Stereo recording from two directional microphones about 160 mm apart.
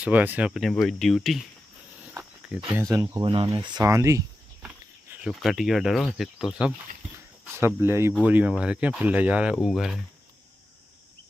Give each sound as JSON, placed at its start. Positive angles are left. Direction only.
{"t": 0.0, "sound": "speech", "side_deg": -10}
{"t": 2.5, "sound": "speech", "side_deg": -5}
{"t": 2.9, "sound": "speech", "side_deg": -20}
{"t": 3.7, "sound": "speech", "side_deg": -20}
{"t": 4.6, "sound": "speech", "side_deg": -5}
{"t": 7.5, "sound": "speech", "side_deg": -15}